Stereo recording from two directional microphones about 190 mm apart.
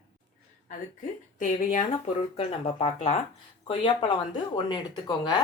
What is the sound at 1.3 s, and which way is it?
Speech, 40° left (ahead or behind).